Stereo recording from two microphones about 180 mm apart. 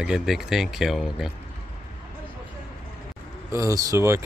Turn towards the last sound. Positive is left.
turn(degrees=-15)  # may be behind; listen again after turning